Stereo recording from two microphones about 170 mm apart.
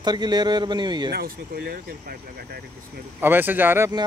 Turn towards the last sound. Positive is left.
turn(degrees=-15)  # may be behind; listen again after turning